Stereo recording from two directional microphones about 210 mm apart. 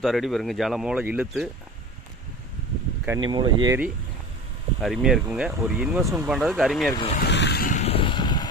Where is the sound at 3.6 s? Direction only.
10° right (ahead or behind).